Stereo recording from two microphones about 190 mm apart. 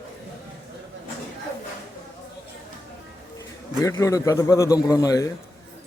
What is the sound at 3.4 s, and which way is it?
A man's voice, 15° left (ahead or behind).